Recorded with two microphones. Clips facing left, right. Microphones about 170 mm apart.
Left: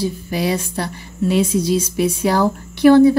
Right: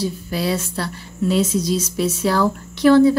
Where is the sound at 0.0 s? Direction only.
15° left (ahead or behind).